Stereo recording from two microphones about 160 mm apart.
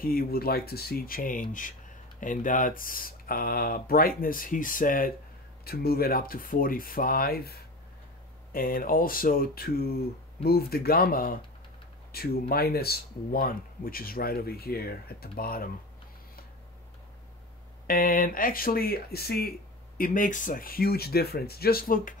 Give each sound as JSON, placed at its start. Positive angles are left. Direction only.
{"t": 0.0, "sound": "speech", "side_deg": 65}
{"t": 5.7, "sound": "speech", "side_deg": 70}
{"t": 8.5, "sound": "speech", "side_deg": 60}
{"t": 17.8, "sound": "speech", "side_deg": 65}
{"t": 20.0, "sound": "speech", "side_deg": 55}